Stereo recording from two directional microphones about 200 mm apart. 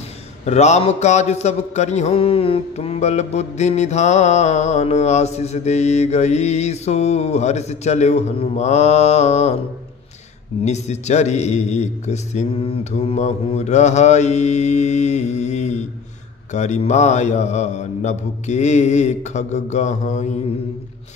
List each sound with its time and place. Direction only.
0.5 s mantra: 35° left (ahead or behind)
10.6 s mantra: 35° left (ahead or behind)